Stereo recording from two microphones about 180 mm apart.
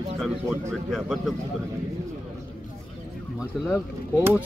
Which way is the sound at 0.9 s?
Centre (ahead or behind).